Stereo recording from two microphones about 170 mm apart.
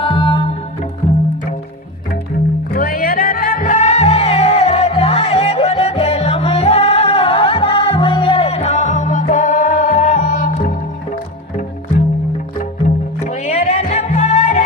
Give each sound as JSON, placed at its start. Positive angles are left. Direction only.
{"t": 0.0, "sound": "music", "side_deg": 30}
{"t": 2.7, "sound": "music", "side_deg": 55}
{"t": 13.2, "sound": "music", "side_deg": 40}